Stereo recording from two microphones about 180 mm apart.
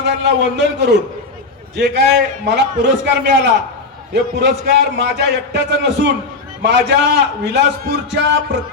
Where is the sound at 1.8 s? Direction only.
70° right (ahead or behind).